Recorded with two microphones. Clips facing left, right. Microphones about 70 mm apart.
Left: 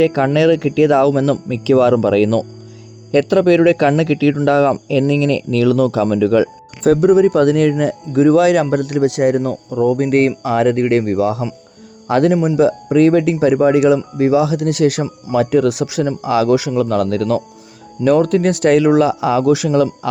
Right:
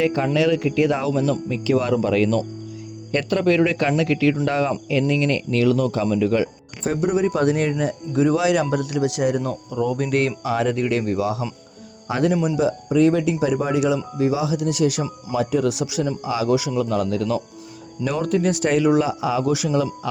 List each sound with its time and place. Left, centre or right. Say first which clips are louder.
0.0 s speech: left 6 dB; left
12.0 s speech: left 7 dB; left
12.3 s speech: left 6 dB; left
12.5 s speech: left 6 dB; left